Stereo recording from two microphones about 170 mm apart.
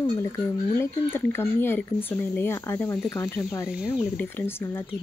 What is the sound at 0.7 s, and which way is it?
Speech, 15° left (ahead or behind).